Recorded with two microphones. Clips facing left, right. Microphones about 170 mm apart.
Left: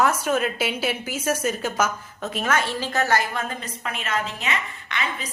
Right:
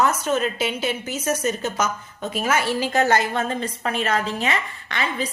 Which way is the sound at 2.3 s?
5° right (ahead or behind).